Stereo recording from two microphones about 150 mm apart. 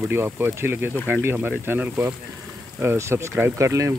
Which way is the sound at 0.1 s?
15° right (ahead or behind).